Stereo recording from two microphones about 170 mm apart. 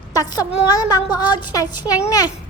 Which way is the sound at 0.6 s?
25° left (ahead or behind).